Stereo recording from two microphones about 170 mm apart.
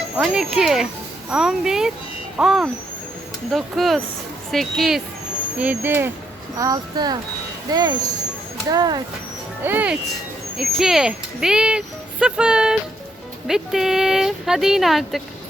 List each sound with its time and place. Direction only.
0.2 s speech: centre (ahead or behind)
6.6 s speech: 20° right (ahead or behind)
9.6 s speech: 10° right (ahead or behind)